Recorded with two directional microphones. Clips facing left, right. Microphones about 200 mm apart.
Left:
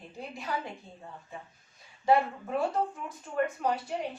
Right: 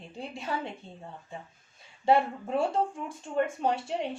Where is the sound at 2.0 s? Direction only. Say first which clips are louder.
Right 1 dB; 30° right (ahead or behind).